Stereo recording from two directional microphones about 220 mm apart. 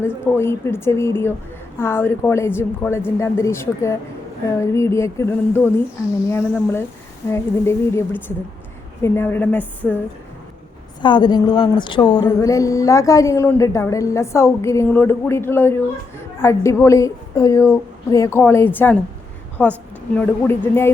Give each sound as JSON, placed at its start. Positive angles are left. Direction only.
{"t": 0.0, "sound": "speech", "side_deg": 10}
{"t": 11.0, "sound": "a woman's voice", "side_deg": 20}